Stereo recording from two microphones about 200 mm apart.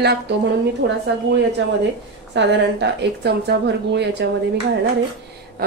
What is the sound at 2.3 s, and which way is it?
A woman's voice, 60° right (ahead or behind).